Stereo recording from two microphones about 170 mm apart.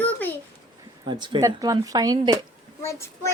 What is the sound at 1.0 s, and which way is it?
Speech, 25° right (ahead or behind).